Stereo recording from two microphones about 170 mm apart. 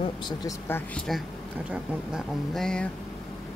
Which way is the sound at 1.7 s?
Centre (ahead or behind).